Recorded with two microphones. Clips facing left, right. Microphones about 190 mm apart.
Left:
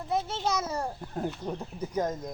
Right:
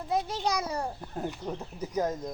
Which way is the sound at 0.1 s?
15° right (ahead or behind).